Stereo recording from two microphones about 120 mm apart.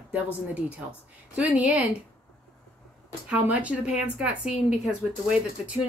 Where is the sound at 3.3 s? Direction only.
10° right (ahead or behind).